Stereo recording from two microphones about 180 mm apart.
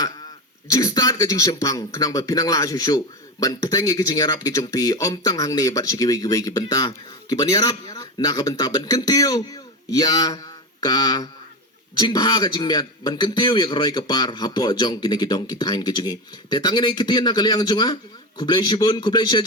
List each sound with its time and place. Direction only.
0.7 s speech: 20° left (ahead or behind)